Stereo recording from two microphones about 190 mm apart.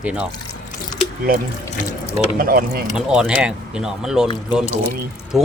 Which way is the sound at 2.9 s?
5° right (ahead or behind).